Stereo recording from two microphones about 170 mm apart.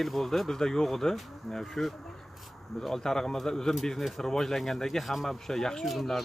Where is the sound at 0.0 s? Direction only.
Centre (ahead or behind).